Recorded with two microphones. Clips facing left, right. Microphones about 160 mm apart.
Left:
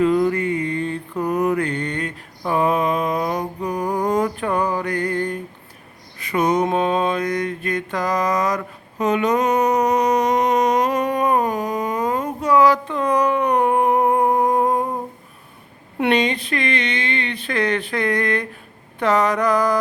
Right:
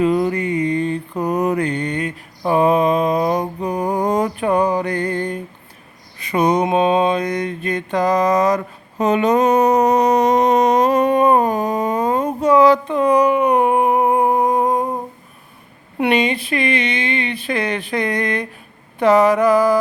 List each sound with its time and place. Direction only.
0.0 s a sound: 20° right (ahead or behind)
1.2 s mantra: 20° right (ahead or behind); by 14.8 s centre (ahead or behind)
16.0 s speech: 10° right (ahead or behind)
18.9 s mantra: 10° right (ahead or behind)